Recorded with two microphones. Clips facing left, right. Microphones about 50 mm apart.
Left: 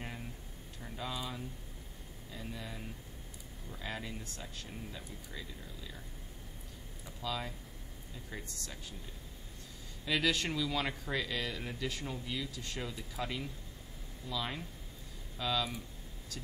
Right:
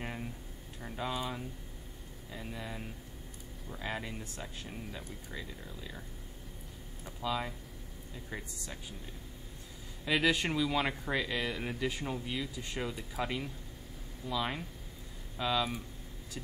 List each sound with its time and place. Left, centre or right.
0.0 s a sound: centre
0.7 s speech: centre
7.2 s speech: centre
10.0 s speech: centre